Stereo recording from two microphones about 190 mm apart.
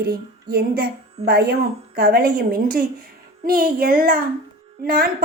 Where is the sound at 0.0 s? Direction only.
55° right (ahead or behind).